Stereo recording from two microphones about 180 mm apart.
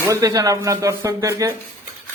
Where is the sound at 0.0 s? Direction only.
20° right (ahead or behind).